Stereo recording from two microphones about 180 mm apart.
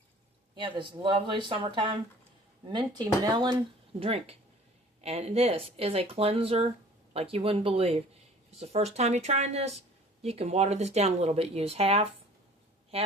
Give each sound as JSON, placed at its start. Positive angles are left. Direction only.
{"t": 0.5, "sound": "speech", "side_deg": -25}